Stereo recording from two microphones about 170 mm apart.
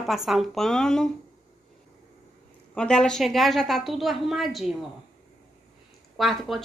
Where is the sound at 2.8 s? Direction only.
5° left (ahead or behind).